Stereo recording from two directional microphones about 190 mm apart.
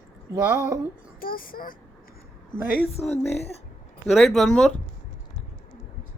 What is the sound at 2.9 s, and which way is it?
Speech, 35° left (ahead or behind).